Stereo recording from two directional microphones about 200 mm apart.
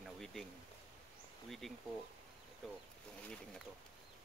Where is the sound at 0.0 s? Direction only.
Centre (ahead or behind).